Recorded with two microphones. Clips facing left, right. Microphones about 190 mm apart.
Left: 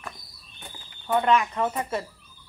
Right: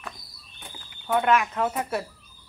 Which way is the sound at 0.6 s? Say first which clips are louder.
Even; centre (ahead or behind).